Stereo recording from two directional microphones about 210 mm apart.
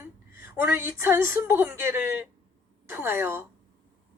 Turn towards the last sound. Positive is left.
turn(degrees=-10)  # may be behind; listen again after turning